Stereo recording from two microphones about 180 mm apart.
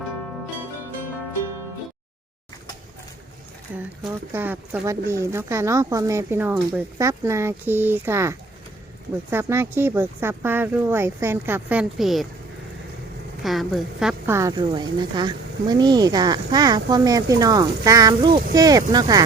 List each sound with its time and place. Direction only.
3.8 s speech: 10° right (ahead or behind)
13.4 s a woman's voice: centre (ahead or behind)
14.3 s speech: 15° right (ahead or behind)